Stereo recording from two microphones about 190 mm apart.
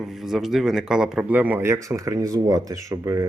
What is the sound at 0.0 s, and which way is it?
Speech, centre (ahead or behind).